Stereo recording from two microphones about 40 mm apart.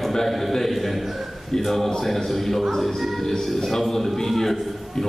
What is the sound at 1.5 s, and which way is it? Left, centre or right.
A man's voice, centre.